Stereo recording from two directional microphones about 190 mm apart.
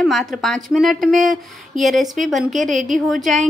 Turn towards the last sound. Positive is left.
turn(degrees=0)  # may be behind; listen again after turning